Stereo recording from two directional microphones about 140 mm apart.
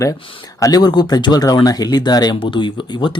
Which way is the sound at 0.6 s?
30° left (ahead or behind).